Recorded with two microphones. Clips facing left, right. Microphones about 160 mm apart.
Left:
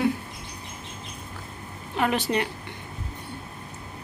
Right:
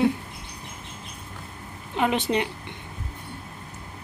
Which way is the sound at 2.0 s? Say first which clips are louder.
Right 1 dB; 20° right (ahead or behind).